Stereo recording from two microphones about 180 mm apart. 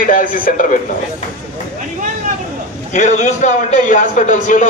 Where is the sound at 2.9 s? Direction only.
45° left (ahead or behind).